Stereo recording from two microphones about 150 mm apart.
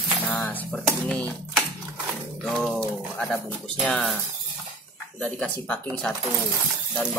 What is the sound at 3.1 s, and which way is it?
Bird, centre (ahead or behind).